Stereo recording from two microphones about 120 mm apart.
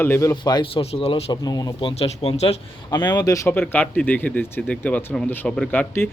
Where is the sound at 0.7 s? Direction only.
55° left (ahead or behind).